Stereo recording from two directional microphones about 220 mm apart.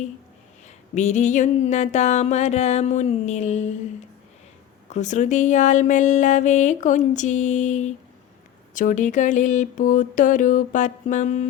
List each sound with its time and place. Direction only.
0.9 s speech: 35° left (ahead or behind)
4.9 s speech: 35° left (ahead or behind)